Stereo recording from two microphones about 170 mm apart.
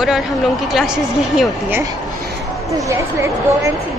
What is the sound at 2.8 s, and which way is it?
Speech, 15° right (ahead or behind).